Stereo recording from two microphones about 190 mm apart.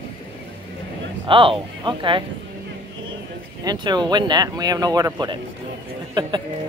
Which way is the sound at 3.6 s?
20° right (ahead or behind).